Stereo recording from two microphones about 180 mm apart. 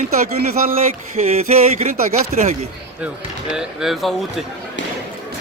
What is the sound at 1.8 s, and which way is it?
Speech, 35° right (ahead or behind).